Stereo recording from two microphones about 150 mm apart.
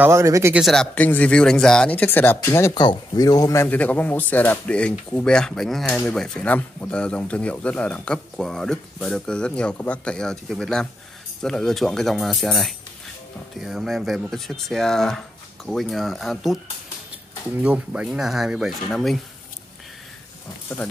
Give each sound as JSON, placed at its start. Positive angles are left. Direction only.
{"t": 0.0, "sound": "speech", "side_deg": -20}
{"t": 0.6, "sound": "speech", "side_deg": 0}
{"t": 0.9, "sound": "speech", "side_deg": 10}
{"t": 3.6, "sound": "speech", "side_deg": 10}
{"t": 17.6, "sound": "speech", "side_deg": -10}